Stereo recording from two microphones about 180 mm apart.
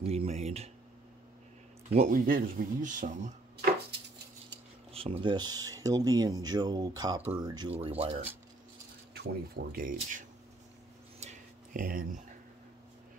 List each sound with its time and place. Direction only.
0.0 s speech: 35° right (ahead or behind)
1.9 s speech: 45° right (ahead or behind)
4.9 s speech: 30° right (ahead or behind)
7.7 s speech: 35° right (ahead or behind)
9.1 s speech: 60° right (ahead or behind)
11.1 s a sound: 45° right (ahead or behind)